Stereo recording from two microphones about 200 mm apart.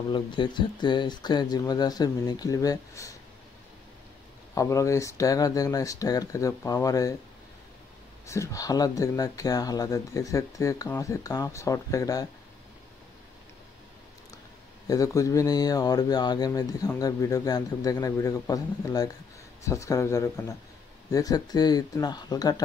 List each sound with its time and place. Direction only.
0.1 s speech: 25° left (ahead or behind)
4.6 s speech: 15° left (ahead or behind)
8.3 s speech: 15° left (ahead or behind)
14.9 s speech: 15° left (ahead or behind)